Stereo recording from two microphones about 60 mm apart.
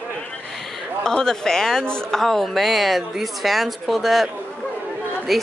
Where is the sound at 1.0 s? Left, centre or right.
Centre.